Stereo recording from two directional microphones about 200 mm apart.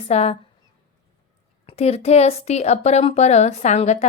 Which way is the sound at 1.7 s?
30° left (ahead or behind).